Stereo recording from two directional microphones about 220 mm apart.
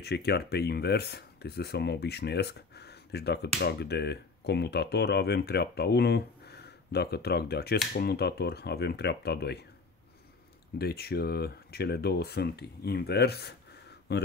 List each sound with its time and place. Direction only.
0.0 s speech: 50° left (ahead or behind)
10.8 s speech: 45° left (ahead or behind)